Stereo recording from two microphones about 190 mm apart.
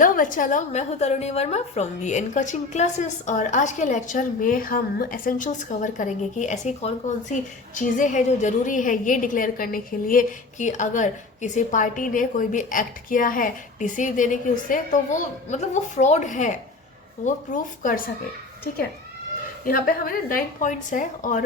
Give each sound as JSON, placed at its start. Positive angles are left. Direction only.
{"t": 0.0, "sound": "a woman's voice", "side_deg": 45}
{"t": 19.6, "sound": "a woman's voice", "side_deg": 50}